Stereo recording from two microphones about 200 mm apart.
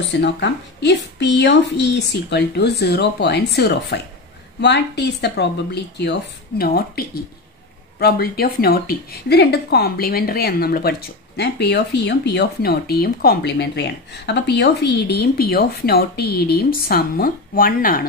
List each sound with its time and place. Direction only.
0.2 s speech: 60° left (ahead or behind)
6.6 s a woman's voice: 50° left (ahead or behind)